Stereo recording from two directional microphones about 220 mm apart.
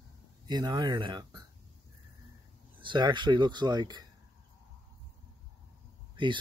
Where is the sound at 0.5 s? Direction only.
20° right (ahead or behind).